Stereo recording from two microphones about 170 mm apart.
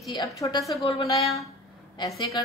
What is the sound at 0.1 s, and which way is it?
A woman's voice, 20° left (ahead or behind).